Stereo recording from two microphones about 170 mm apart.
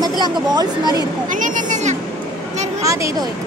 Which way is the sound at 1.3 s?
50° right (ahead or behind).